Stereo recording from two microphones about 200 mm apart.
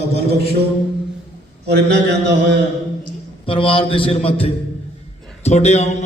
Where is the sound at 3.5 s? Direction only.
25° left (ahead or behind).